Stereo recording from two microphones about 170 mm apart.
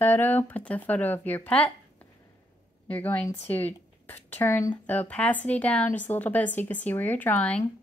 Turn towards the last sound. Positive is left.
turn(degrees=10)  # may be behind; listen again after turning